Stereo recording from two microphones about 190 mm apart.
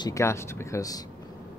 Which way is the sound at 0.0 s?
15° left (ahead or behind).